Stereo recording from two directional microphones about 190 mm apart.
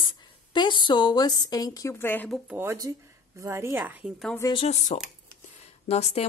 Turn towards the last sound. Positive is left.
turn(degrees=35)  # may be behind; listen again after turning